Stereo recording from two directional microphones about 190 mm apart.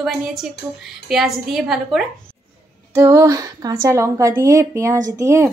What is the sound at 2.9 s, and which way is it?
A woman's voice, 15° right (ahead or behind).